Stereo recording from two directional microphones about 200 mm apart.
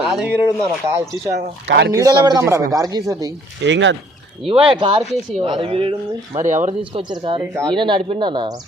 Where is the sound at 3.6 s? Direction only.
65° right (ahead or behind).